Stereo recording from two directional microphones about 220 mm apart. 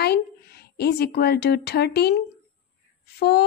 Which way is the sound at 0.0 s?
45° left (ahead or behind).